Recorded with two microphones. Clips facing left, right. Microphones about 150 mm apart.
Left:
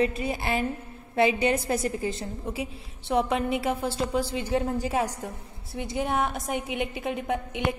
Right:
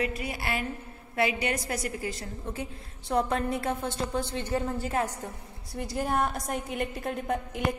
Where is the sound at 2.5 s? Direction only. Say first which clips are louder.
Left 2 dB; 10° left (ahead or behind).